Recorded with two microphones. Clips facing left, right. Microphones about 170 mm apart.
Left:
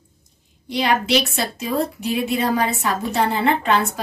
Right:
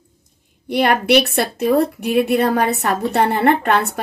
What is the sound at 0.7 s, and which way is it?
A woman's voice, 60° right (ahead or behind).